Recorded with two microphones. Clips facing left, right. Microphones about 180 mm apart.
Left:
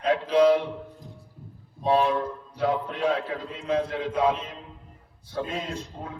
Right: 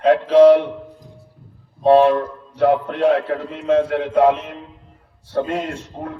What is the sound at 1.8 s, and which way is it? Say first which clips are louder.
A man's voice: right 10 dB; 70° right (ahead or behind).